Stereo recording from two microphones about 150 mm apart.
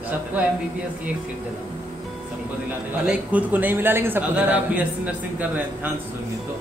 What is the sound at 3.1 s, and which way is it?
Speech, 10° right (ahead or behind).